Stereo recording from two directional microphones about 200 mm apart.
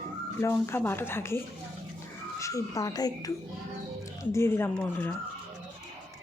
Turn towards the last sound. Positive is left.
turn(degrees=10)  # may be behind; listen again after turning